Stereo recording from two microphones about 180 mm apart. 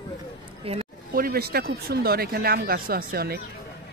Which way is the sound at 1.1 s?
55° right (ahead or behind).